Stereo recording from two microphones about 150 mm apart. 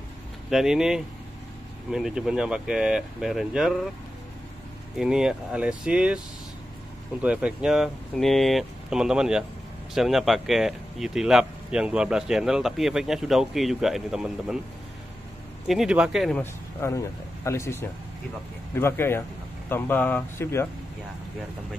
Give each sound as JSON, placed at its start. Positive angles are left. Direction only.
{"t": 0.5, "sound": "speech", "side_deg": -5}
{"t": 4.9, "sound": "speech", "side_deg": -5}
{"t": 15.6, "sound": "speech", "side_deg": 0}
{"t": 16.3, "sound": "speech", "side_deg": 20}